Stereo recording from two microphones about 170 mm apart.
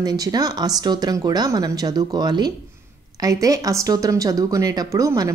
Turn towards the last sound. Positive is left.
turn(degrees=-20)  # may be behind; listen again after turning